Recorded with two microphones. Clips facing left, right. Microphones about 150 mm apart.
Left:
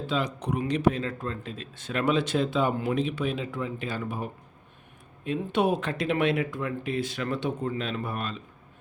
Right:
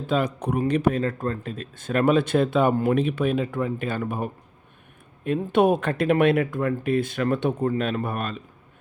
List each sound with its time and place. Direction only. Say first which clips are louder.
0.1 s speech: right 6 dB; 55° right (ahead or behind)